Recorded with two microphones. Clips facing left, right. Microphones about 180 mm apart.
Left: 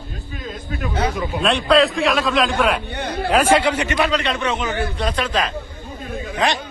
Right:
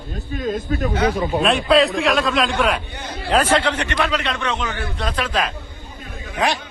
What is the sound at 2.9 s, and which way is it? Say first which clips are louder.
Speech: left 6 dB; 65° left (ahead or behind).